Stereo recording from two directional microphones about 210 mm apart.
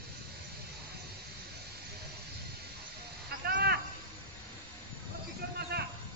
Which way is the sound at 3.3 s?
50° right (ahead or behind).